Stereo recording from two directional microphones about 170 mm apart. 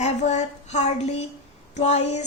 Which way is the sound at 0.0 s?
45° left (ahead or behind).